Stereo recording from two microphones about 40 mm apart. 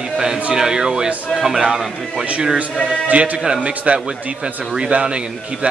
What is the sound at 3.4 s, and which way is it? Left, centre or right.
Speech, right.